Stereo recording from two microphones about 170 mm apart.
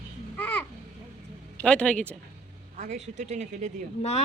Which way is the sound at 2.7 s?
45° right (ahead or behind).